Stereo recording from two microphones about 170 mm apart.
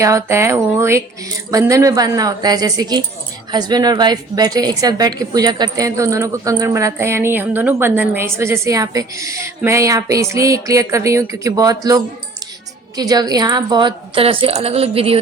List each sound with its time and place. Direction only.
0.0 s a woman's voice: 20° right (ahead or behind); by 15.2 s 35° right (ahead or behind)